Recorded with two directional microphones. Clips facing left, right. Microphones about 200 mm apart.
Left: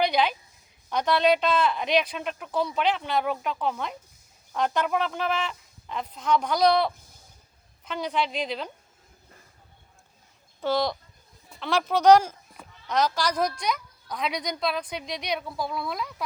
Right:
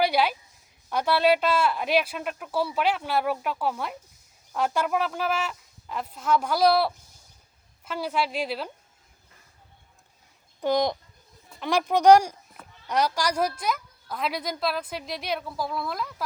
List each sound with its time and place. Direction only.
0.0 s a sound: 10° right (ahead or behind)
0.9 s speech: 5° right (ahead or behind)
10.6 s a woman's voice: 15° right (ahead or behind); by 16.2 s centre (ahead or behind)